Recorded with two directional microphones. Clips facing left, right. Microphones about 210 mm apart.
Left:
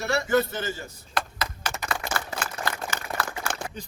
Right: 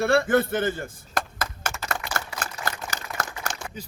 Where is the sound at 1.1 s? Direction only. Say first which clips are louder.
Even; 45° right (ahead or behind).